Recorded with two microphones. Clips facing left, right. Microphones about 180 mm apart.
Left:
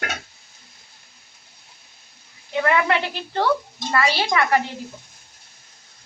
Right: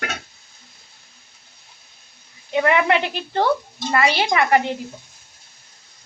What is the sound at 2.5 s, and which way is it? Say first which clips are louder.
A woman's voice: right 2 dB; 20° right (ahead or behind).